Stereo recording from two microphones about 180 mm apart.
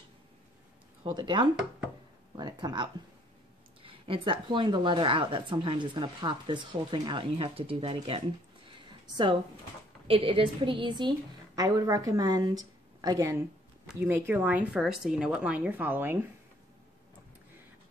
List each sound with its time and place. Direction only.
1.1 s speech: 25° right (ahead or behind)